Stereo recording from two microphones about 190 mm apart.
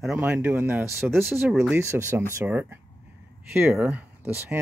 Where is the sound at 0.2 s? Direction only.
10° right (ahead or behind).